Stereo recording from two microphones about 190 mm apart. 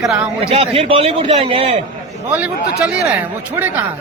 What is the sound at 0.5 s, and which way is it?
A man's voice, 30° right (ahead or behind).